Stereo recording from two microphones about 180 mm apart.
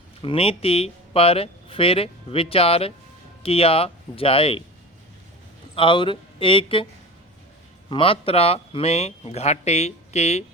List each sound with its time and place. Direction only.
0.2 s speech: 30° left (ahead or behind)
5.7 s speech: 30° left (ahead or behind)
7.9 s speech: 30° left (ahead or behind)